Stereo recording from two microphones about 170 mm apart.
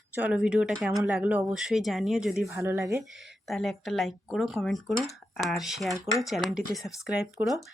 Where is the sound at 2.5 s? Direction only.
15° right (ahead or behind).